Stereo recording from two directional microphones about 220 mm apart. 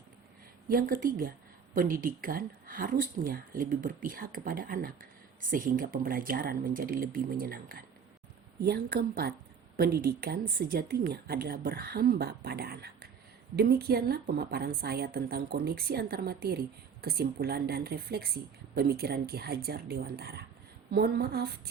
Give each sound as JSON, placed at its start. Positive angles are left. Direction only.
{"t": 0.7, "sound": "a woman's voice", "side_deg": -40}